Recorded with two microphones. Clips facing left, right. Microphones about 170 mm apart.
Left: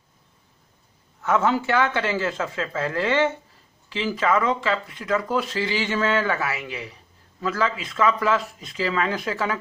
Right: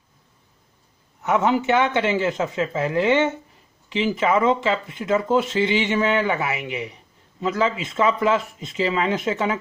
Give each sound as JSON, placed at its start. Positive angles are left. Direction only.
{"t": 1.2, "sound": "speech", "side_deg": -20}